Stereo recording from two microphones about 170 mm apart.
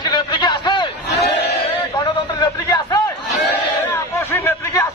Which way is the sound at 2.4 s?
20° left (ahead or behind).